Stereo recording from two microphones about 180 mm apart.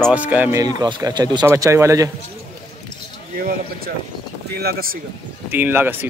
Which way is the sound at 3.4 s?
55° right (ahead or behind).